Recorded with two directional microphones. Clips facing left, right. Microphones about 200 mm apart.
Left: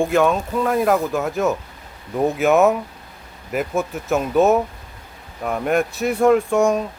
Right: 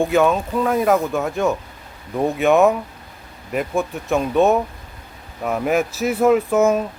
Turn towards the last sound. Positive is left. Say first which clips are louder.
# right 1 dB
turn(degrees=-5)  # may be behind; listen again after turning